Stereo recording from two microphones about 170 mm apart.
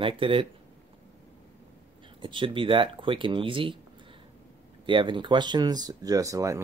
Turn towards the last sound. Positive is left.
turn(degrees=-20)  # may be behind; listen again after turning